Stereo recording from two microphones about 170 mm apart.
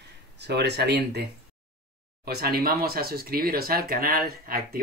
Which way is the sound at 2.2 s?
65° right (ahead or behind).